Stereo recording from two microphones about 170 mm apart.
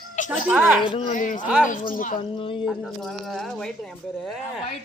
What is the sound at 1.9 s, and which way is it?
Speech, 55° left (ahead or behind).